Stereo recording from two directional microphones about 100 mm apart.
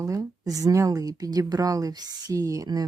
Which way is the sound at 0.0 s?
35° right (ahead or behind).